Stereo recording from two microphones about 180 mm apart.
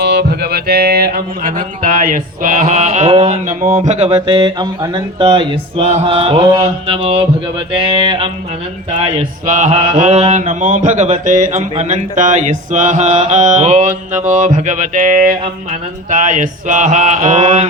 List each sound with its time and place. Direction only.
0.0 s speech: 65° right (ahead or behind); by 8.3 s 30° right (ahead or behind)
9.5 s speech: 40° right (ahead or behind)